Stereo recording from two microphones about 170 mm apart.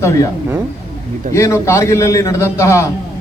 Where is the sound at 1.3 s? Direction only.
15° left (ahead or behind).